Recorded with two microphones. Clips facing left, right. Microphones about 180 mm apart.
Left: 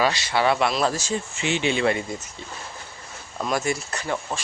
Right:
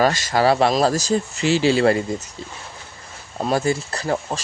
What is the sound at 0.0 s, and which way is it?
Speech, 45° right (ahead or behind).